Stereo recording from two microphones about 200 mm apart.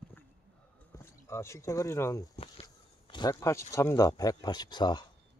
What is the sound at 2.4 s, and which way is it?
Speech, 25° left (ahead or behind).